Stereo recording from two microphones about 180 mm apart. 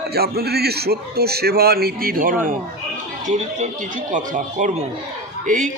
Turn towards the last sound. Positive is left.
turn(degrees=-45)  # may be behind; listen again after turning